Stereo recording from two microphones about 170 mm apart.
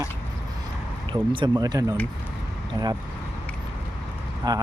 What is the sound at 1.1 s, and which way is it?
Speech, 25° right (ahead or behind).